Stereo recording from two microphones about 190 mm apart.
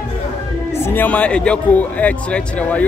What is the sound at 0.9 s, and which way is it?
A man's voice, 10° left (ahead or behind).